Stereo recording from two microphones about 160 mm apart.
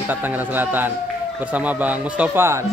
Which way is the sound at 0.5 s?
10° right (ahead or behind).